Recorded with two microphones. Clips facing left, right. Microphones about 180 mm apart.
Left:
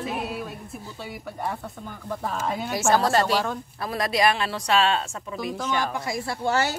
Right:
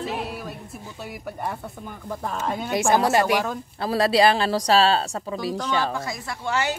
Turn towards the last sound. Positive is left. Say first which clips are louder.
# left 1 dB
turn(degrees=40)  # may be behind; listen again after turning